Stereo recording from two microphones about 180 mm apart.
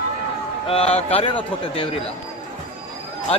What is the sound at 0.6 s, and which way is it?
Speech, 35° left (ahead or behind).